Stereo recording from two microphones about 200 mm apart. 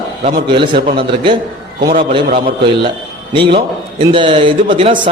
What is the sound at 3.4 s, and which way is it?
A man's voice, 25° right (ahead or behind).